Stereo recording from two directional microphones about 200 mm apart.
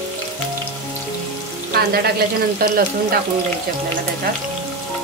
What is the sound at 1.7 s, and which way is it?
Speech, 50° right (ahead or behind).